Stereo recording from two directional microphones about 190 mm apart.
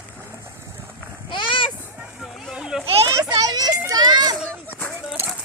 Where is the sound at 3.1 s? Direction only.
15° right (ahead or behind).